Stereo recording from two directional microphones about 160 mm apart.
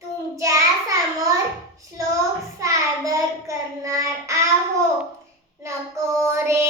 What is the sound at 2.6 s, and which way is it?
Child singing, 20° right (ahead or behind).